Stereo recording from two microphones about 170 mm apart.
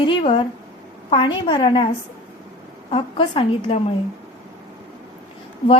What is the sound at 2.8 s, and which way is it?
Speech, 30° left (ahead or behind).